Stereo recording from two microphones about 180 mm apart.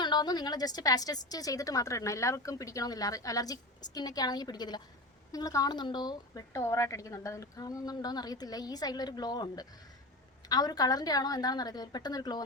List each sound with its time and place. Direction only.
0.0 s a woman's voice: 25° left (ahead or behind)